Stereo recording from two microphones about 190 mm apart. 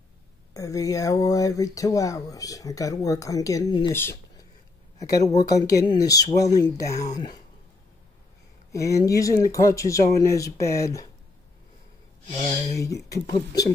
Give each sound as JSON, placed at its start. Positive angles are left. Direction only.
{"t": 0.6, "sound": "speech", "side_deg": 15}
{"t": 4.9, "sound": "speech", "side_deg": 35}
{"t": 5.4, "sound": "speech", "side_deg": 20}
{"t": 8.7, "sound": "speech", "side_deg": 15}
{"t": 12.3, "sound": "speech", "side_deg": 35}
{"t": 12.7, "sound": "speech", "side_deg": 15}